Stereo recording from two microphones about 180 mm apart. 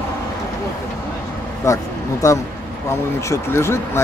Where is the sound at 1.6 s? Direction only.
15° left (ahead or behind).